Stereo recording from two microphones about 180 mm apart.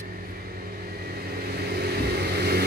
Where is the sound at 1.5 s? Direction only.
65° right (ahead or behind).